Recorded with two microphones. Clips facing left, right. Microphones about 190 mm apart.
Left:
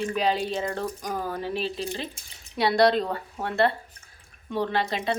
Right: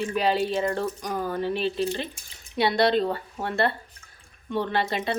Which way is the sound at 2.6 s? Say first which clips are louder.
Left 2 dB; 25° right (ahead or behind).